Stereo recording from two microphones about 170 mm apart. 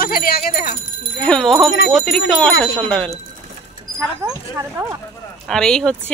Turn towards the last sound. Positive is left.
turn(degrees=5)  # may be behind; listen again after turning